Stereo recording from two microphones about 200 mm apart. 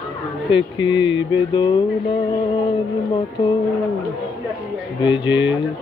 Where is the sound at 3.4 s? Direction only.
25° left (ahead or behind).